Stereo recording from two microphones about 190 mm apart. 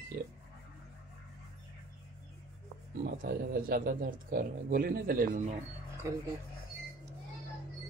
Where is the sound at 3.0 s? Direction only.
50° right (ahead or behind).